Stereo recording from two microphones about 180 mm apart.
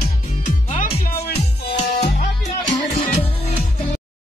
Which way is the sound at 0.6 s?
50° left (ahead or behind).